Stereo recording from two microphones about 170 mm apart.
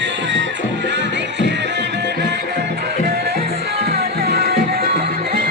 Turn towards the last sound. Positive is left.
turn(degrees=-65)  # may be behind; listen again after turning